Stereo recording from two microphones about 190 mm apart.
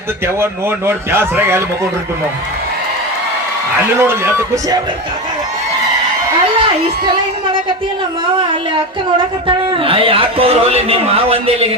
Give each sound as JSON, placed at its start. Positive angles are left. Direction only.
{"t": 0.9, "sound": "a man's voice", "side_deg": -10}
{"t": 3.9, "sound": "a man's voice", "side_deg": -15}
{"t": 8.4, "sound": "a woman's voice", "side_deg": -25}